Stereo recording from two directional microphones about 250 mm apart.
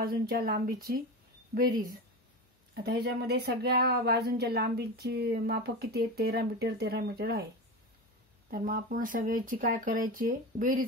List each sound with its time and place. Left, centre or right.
0.0 s speech: right
8.5 s speech: right